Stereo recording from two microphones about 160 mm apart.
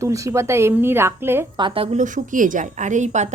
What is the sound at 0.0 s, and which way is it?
A woman's voice, 20° right (ahead or behind).